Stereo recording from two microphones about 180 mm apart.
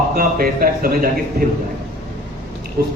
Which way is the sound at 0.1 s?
55° right (ahead or behind).